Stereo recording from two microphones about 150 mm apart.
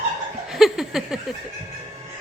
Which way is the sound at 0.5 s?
Centre (ahead or behind).